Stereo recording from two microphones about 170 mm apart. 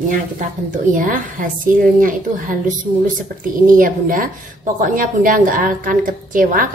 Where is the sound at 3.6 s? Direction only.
55° right (ahead or behind).